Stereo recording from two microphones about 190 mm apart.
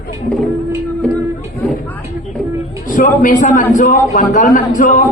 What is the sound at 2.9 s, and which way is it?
A man's voice, 45° left (ahead or behind).